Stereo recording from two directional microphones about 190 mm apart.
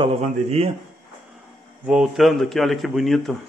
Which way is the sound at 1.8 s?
5° right (ahead or behind).